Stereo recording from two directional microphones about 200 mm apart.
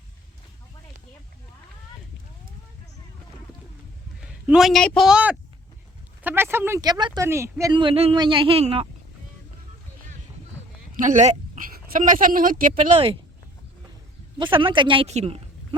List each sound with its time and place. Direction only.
4.2 s a man's voice: 5° right (ahead or behind); by 8.9 s 30° right (ahead or behind)
11.0 s speech: 40° right (ahead or behind)
14.3 s speech: 25° right (ahead or behind)